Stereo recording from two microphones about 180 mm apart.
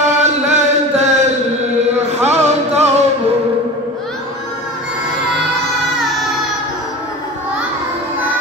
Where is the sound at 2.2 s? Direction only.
40° right (ahead or behind).